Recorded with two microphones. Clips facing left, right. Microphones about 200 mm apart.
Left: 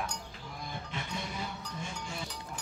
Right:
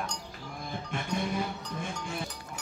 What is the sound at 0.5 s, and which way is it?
Music, 50° right (ahead or behind).